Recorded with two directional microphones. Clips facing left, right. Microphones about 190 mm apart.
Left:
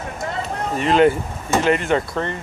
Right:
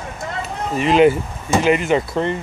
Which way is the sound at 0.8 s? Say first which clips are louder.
Right 2 dB; 5° right (ahead or behind).